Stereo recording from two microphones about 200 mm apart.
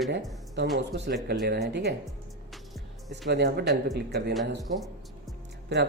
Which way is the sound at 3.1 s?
55° right (ahead or behind).